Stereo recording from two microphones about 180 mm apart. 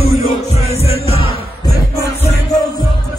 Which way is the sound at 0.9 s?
35° left (ahead or behind).